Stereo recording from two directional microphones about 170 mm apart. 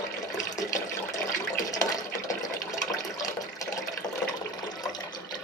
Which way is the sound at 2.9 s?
20° left (ahead or behind).